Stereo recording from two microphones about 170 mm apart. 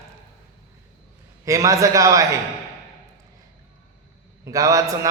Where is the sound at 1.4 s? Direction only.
20° right (ahead or behind).